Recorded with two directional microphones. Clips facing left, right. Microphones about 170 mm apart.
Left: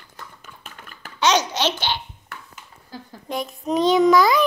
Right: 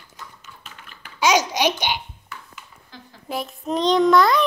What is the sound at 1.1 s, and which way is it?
Babbling, 10° right (ahead or behind).